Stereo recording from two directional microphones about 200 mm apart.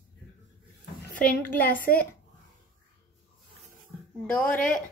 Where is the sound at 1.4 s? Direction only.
10° left (ahead or behind).